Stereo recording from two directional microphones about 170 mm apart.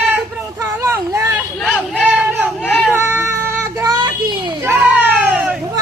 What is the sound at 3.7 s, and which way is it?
Child singing, 20° right (ahead or behind).